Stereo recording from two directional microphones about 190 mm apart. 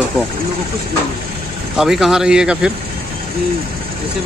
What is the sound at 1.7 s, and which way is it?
Speech, centre (ahead or behind).